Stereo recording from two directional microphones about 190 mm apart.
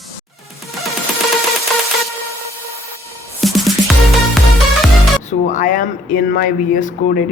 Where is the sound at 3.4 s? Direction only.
Centre (ahead or behind).